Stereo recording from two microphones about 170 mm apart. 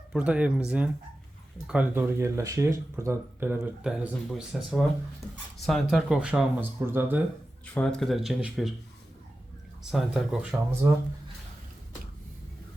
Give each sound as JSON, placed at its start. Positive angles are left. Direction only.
{"t": 0.1, "sound": "speech", "side_deg": -5}
{"t": 7.7, "sound": "speech", "side_deg": 5}
{"t": 9.9, "sound": "speech", "side_deg": 0}
{"t": 10.8, "sound": "speech", "side_deg": -15}